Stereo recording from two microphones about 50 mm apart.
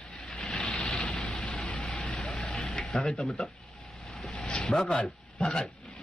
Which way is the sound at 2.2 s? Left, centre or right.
Centre.